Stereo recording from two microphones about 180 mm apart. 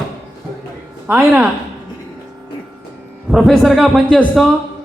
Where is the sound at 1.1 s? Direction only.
5° right (ahead or behind).